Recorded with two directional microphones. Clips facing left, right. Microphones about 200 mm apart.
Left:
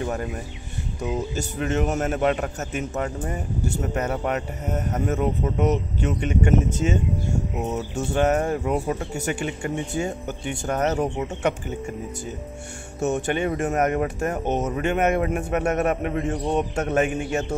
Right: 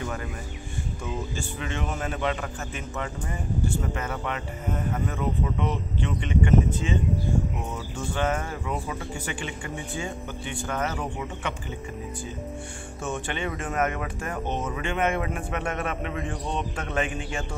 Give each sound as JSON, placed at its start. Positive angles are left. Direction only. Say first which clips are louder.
{"t": 0.0, "sound": "speech", "louder": "left 5 dB", "side_deg": 35}
{"t": 1.3, "sound": "a man's voice", "louder": "left 7 dB", "side_deg": 45}
{"t": 13.0, "sound": "a man's voice", "louder": "left 8 dB", "side_deg": 45}